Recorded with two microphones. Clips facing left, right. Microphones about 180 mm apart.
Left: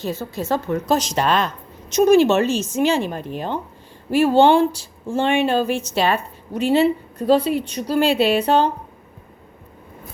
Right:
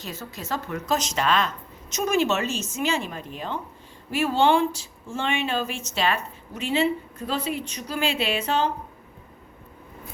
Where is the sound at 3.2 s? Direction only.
60° left (ahead or behind).